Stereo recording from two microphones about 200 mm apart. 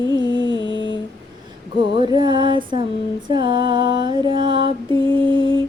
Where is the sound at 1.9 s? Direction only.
20° right (ahead or behind).